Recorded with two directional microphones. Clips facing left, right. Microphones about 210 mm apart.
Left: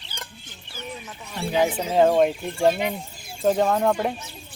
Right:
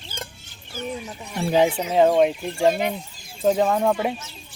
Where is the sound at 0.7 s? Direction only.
35° right (ahead or behind).